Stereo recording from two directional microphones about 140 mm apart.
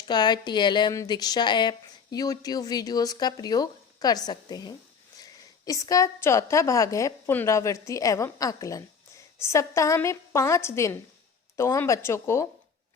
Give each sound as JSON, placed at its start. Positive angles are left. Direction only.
{"t": 0.1, "sound": "a woman's voice", "side_deg": 30}